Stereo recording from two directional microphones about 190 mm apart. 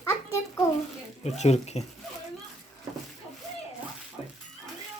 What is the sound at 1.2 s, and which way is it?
Speech, 35° left (ahead or behind).